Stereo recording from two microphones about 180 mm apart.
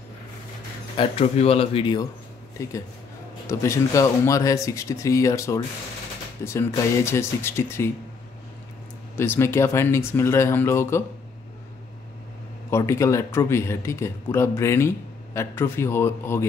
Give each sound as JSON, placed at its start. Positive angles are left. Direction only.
{"t": 0.9, "sound": "speech", "side_deg": 35}
{"t": 2.6, "sound": "speech", "side_deg": 15}
{"t": 9.1, "sound": "speech", "side_deg": 10}
{"t": 12.7, "sound": "speech", "side_deg": 15}